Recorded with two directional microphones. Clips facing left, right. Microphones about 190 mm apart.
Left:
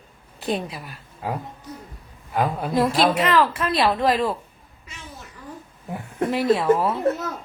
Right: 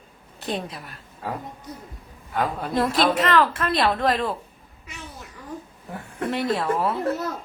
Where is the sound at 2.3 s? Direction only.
5° left (ahead or behind).